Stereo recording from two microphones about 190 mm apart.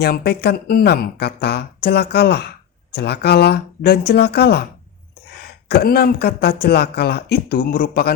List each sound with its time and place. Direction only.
0.0 s speech: 60° left (ahead or behind)
5.6 s speech: 55° left (ahead or behind)